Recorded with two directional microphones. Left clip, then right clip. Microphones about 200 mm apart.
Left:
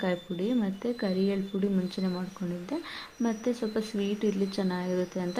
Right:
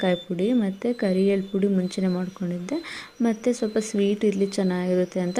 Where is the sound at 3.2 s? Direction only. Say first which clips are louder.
Right 7 dB; 30° right (ahead or behind).